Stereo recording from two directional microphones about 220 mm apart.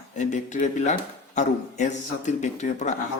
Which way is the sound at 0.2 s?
35° left (ahead or behind).